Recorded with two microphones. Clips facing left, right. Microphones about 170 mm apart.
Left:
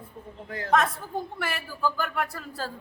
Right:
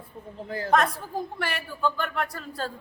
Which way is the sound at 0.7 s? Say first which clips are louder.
Right 1 dB; centre (ahead or behind).